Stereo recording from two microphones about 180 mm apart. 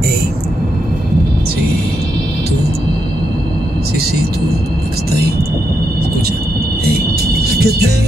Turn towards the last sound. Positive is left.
turn(degrees=-60)  # may be behind; listen again after turning